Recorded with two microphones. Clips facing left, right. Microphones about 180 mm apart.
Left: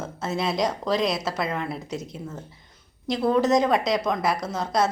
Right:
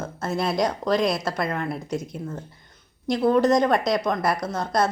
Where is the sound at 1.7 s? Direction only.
25° left (ahead or behind).